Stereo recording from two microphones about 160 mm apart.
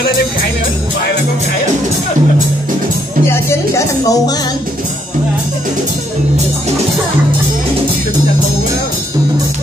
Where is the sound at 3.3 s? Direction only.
15° left (ahead or behind).